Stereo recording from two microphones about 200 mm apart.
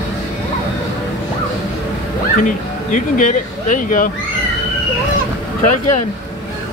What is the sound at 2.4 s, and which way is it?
Speech, 40° left (ahead or behind).